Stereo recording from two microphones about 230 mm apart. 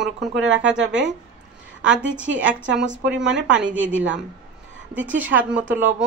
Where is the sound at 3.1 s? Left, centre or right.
Right.